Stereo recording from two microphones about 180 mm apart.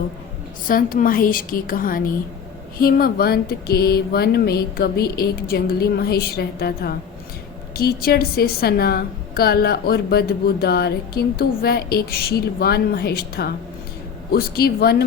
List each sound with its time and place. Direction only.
0.7 s a woman's voice: 50° left (ahead or behind)